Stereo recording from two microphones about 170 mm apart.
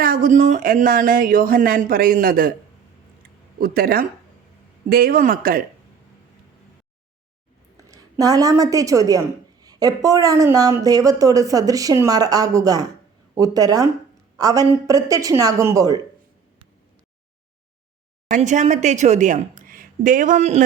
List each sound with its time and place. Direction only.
0.0 s speech: 55° right (ahead or behind)
3.6 s speech: 60° right (ahead or behind)
7.8 s speech: 20° right (ahead or behind)
18.3 s a woman's voice: 45° right (ahead or behind)